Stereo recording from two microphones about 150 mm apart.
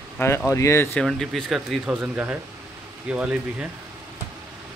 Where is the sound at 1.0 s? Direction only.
5° left (ahead or behind).